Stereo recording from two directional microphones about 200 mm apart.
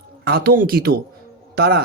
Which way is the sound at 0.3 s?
50° right (ahead or behind).